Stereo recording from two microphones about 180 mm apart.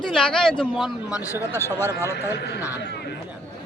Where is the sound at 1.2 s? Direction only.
15° left (ahead or behind).